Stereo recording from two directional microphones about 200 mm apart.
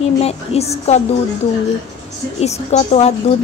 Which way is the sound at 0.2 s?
30° left (ahead or behind).